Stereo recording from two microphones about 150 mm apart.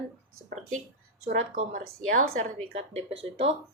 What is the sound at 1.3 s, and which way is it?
Speech, 65° right (ahead or behind).